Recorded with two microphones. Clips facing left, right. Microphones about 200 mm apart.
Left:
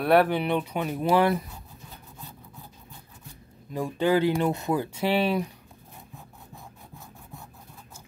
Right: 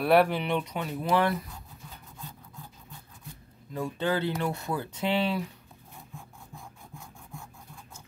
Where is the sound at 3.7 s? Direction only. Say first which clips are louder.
Left 5 dB; 15° left (ahead or behind).